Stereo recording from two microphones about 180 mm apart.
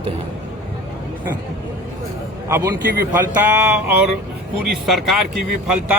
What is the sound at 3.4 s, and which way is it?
Speech, 10° right (ahead or behind).